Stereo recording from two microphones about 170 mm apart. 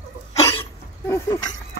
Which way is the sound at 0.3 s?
15° left (ahead or behind).